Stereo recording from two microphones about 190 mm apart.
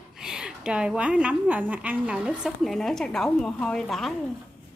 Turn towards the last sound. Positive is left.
turn(degrees=0)  # may be behind; listen again after turning